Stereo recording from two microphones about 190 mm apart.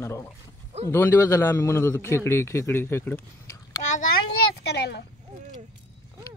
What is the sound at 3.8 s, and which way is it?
A child's voice, 45° left (ahead or behind).